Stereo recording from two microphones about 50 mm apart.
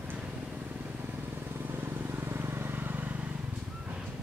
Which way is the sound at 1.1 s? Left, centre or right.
Right.